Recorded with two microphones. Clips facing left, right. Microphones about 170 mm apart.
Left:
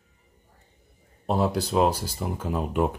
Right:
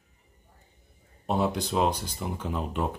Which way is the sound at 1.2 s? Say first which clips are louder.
Left 2 dB; centre (ahead or behind).